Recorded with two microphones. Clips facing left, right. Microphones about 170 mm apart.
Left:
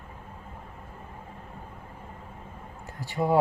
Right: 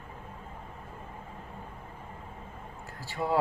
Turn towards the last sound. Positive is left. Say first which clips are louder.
# left 5 dB
turn(degrees=20)  # may be behind; listen again after turning